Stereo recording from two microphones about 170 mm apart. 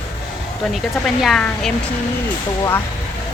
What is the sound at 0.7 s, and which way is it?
Speech, centre (ahead or behind).